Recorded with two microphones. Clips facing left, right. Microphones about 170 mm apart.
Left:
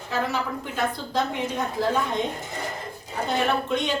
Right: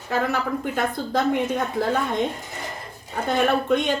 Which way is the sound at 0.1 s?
55° right (ahead or behind).